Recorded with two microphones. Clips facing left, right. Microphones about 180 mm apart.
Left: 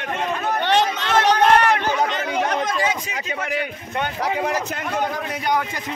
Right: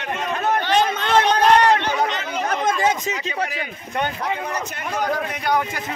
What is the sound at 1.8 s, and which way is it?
Chatter, 50° left (ahead or behind).